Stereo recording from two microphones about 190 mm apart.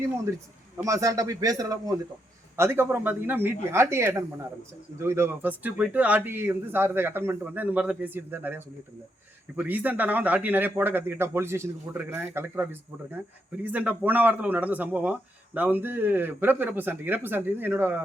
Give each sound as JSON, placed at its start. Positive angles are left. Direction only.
{"t": 0.9, "sound": "speech", "side_deg": -15}